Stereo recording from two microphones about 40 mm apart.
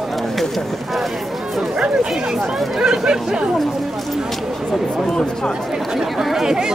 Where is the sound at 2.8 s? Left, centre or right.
Centre.